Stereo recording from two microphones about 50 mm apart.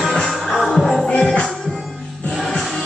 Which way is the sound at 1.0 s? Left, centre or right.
Centre.